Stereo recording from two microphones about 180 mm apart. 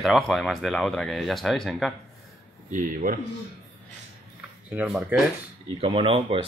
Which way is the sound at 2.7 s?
50° right (ahead or behind).